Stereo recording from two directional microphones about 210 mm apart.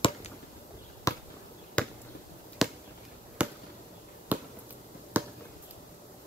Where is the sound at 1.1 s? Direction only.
15° left (ahead or behind).